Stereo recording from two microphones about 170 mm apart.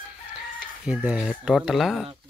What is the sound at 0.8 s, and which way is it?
Speech, 5° right (ahead or behind).